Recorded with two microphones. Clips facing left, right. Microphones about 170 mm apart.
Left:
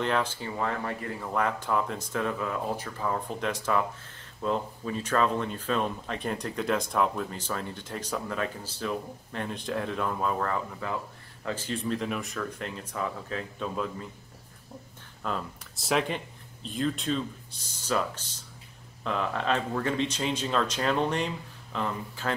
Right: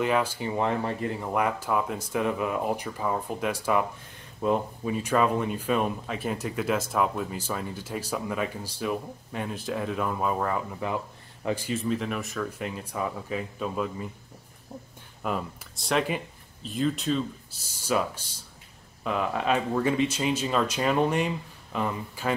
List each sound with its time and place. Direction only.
0.0 s speech: 10° right (ahead or behind)
11.7 s speech: centre (ahead or behind)
15.2 s speech: 10° right (ahead or behind)
15.7 s speech: centre (ahead or behind)